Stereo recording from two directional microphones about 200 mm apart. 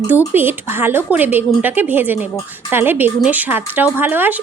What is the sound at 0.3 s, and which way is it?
Speech, 10° right (ahead or behind).